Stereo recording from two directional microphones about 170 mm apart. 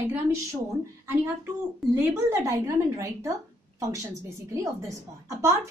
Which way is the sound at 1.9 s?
15° right (ahead or behind).